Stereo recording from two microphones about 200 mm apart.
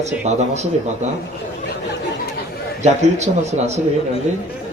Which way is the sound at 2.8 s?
35° right (ahead or behind).